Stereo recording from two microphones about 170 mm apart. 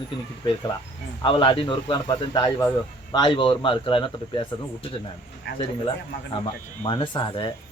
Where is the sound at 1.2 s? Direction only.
30° left (ahead or behind).